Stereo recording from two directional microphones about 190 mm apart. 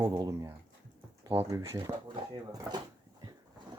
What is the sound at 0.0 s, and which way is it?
Speech, 20° right (ahead or behind).